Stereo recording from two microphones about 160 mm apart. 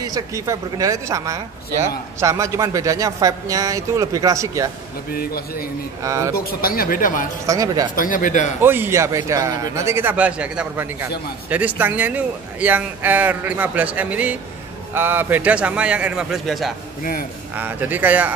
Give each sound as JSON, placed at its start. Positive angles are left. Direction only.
{"t": 0.0, "sound": "speech", "side_deg": -20}
{"t": 5.1, "sound": "a man's voice", "side_deg": 65}
{"t": 6.0, "sound": "speech", "side_deg": -20}
{"t": 6.3, "sound": "speech", "side_deg": 70}
{"t": 7.4, "sound": "speech", "side_deg": -20}
{"t": 7.9, "sound": "speech", "side_deg": 55}
{"t": 8.6, "sound": "speech", "side_deg": -15}
{"t": 17.6, "sound": "speech", "side_deg": -10}